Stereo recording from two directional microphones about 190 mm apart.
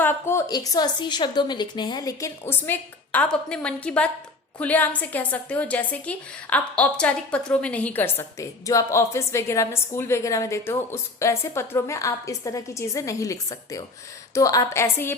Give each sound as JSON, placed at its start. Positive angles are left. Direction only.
{"t": 0.0, "sound": "a woman's voice", "side_deg": 10}